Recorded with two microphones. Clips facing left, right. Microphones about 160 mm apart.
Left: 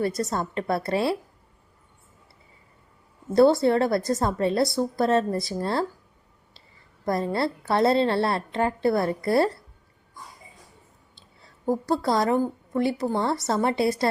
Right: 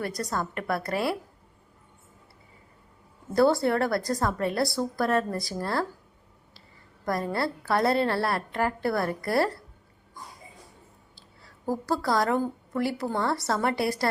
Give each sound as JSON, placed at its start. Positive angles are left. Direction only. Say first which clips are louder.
{"t": 0.0, "sound": "a woman's voice", "louder": "left 4 dB", "side_deg": 25}
{"t": 3.3, "sound": "a woman's voice", "louder": "left 4 dB", "side_deg": 25}
{"t": 7.0, "sound": "a woman's voice", "louder": "left 3 dB", "side_deg": 25}
{"t": 11.6, "sound": "a woman's voice", "louder": "left 4 dB", "side_deg": 20}